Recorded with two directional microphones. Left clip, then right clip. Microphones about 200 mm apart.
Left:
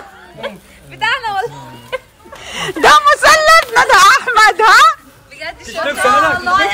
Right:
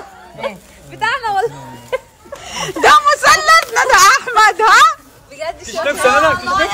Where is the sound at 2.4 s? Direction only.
5° right (ahead or behind).